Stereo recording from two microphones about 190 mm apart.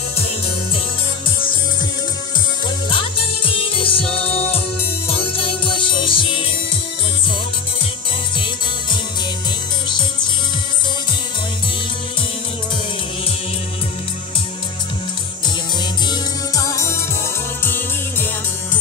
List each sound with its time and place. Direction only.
2.9 s music: 25° left (ahead or behind)
5.0 s music: 30° left (ahead or behind)
16.1 s music: 20° left (ahead or behind)